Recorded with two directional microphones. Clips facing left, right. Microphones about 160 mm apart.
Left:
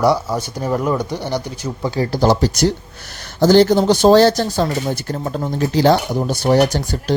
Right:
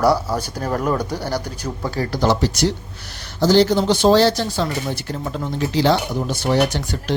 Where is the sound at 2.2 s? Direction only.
40° left (ahead or behind).